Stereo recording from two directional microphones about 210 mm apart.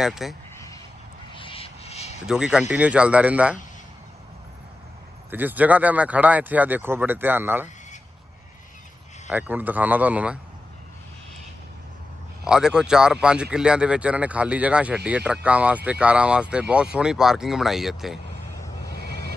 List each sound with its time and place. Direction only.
0.0 s speech: centre (ahead or behind)
1.3 s music: 25° left (ahead or behind)
2.2 s speech: 5° right (ahead or behind)
5.3 s speech: 10° right (ahead or behind)
9.3 s speech: 10° right (ahead or behind)
12.4 s speech: 5° right (ahead or behind)